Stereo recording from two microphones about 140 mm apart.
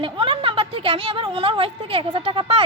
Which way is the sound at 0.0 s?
40° right (ahead or behind).